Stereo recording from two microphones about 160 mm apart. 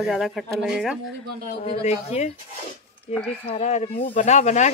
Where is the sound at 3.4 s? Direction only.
45° left (ahead or behind).